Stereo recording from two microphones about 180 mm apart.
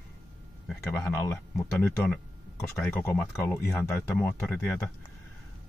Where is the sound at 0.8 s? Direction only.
15° left (ahead or behind).